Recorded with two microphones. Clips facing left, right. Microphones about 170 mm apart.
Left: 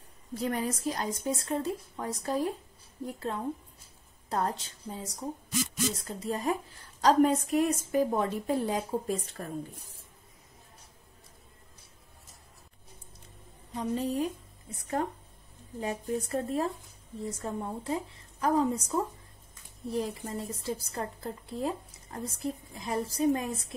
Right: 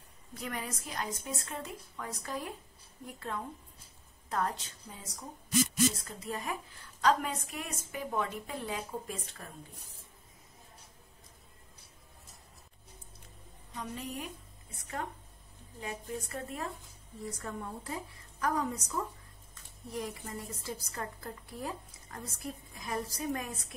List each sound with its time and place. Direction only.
0.3 s a woman's voice: 35° left (ahead or behind)
13.7 s a woman's voice: 35° left (ahead or behind)